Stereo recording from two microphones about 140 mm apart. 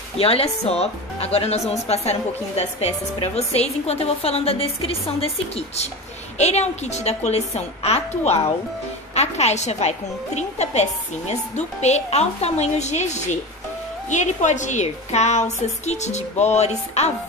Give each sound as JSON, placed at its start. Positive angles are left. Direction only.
{"t": 0.2, "sound": "speech", "side_deg": 45}
{"t": 6.3, "sound": "speech", "side_deg": 50}